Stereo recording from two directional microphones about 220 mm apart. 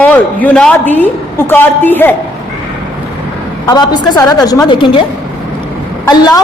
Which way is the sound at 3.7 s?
20° left (ahead or behind).